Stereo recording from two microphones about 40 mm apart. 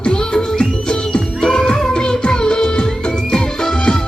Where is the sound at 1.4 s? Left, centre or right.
Centre.